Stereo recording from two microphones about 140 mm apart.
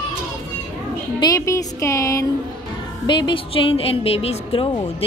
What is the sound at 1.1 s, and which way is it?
A woman's voice, 25° left (ahead or behind).